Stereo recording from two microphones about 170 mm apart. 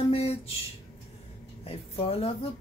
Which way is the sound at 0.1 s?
35° left (ahead or behind).